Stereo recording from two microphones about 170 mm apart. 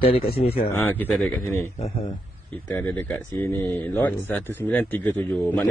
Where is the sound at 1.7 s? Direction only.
40° left (ahead or behind).